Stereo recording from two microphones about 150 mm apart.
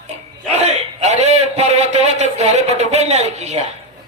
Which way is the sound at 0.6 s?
50° right (ahead or behind).